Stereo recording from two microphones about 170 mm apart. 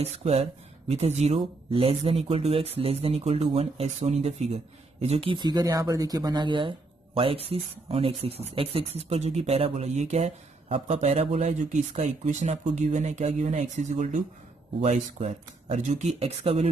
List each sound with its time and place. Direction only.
0.2 s speech: 40° right (ahead or behind)